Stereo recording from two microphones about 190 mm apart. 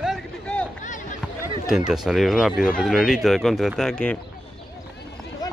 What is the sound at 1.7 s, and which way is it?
Speech, centre (ahead or behind).